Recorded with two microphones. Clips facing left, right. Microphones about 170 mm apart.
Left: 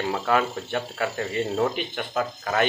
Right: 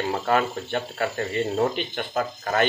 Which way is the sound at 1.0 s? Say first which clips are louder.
Right 1 dB; 5° left (ahead or behind).